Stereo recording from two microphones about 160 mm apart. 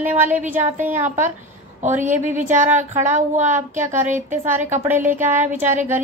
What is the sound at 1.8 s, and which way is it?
Speech, 50° right (ahead or behind).